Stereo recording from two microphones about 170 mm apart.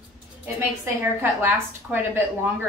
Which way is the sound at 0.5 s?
15° right (ahead or behind).